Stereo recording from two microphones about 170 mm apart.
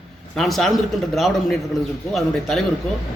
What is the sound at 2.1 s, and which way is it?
Speech, centre (ahead or behind).